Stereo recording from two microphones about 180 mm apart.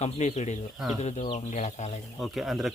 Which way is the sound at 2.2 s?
Centre (ahead or behind).